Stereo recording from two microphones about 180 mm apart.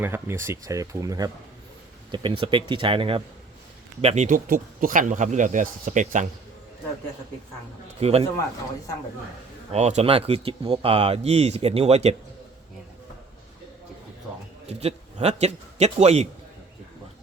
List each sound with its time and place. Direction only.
0.0 s speech: 15° right (ahead or behind); by 3.2 s 30° right (ahead or behind)
4.0 s speech: 40° right (ahead or behind)
7.9 s speech: 35° right (ahead or behind)
9.7 s speech: 35° right (ahead or behind)
14.7 s a man's voice: 35° right (ahead or behind)